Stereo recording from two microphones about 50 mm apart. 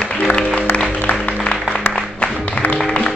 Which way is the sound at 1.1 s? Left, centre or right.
Left.